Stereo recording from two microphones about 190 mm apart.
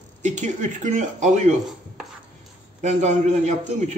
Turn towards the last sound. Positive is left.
turn(degrees=-35)  # may be behind; listen again after turning